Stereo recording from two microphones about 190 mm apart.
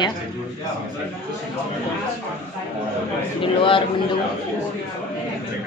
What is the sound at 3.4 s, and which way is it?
Speech, 25° left (ahead or behind).